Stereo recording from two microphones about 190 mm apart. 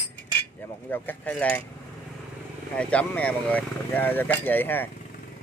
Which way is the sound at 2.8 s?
5° left (ahead or behind).